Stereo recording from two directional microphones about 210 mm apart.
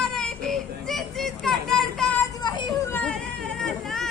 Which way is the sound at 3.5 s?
Centre (ahead or behind).